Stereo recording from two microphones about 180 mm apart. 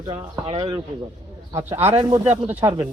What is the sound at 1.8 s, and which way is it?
Speech, 35° right (ahead or behind).